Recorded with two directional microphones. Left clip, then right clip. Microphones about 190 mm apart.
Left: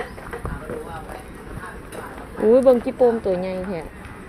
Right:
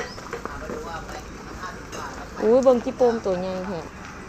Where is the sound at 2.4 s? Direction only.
25° left (ahead or behind).